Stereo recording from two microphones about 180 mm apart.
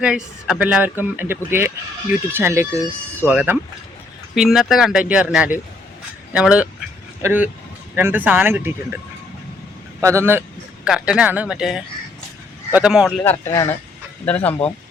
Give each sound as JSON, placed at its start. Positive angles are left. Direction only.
{"t": 0.0, "sound": "speech", "side_deg": -5}
{"t": 10.0, "sound": "speech", "side_deg": -15}
{"t": 13.2, "sound": "speech", "side_deg": 15}